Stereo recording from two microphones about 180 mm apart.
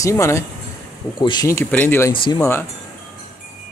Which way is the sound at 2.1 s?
30° left (ahead or behind).